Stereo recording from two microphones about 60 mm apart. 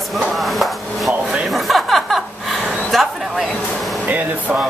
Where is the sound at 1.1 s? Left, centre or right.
Centre.